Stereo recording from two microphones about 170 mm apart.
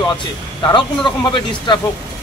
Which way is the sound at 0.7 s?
25° left (ahead or behind).